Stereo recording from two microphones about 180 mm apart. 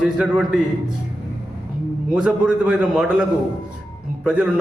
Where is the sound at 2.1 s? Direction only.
5° right (ahead or behind).